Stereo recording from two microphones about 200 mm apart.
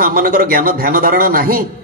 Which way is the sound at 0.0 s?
45° right (ahead or behind).